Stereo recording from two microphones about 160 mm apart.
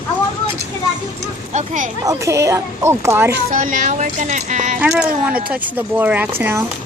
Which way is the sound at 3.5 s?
50° right (ahead or behind).